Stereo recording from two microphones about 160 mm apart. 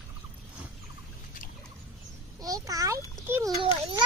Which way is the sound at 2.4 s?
20° right (ahead or behind).